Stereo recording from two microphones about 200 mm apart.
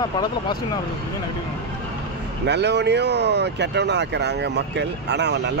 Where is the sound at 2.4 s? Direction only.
60° right (ahead or behind).